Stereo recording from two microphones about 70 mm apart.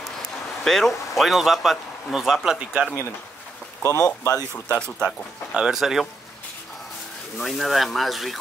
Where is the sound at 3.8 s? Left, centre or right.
Left.